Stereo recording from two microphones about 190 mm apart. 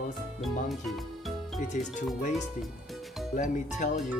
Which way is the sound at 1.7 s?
40° left (ahead or behind).